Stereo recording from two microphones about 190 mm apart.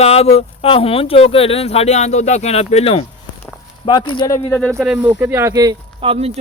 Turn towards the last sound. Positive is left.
turn(degrees=-30)  # may be behind; listen again after turning